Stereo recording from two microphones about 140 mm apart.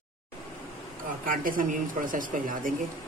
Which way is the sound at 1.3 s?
80° right.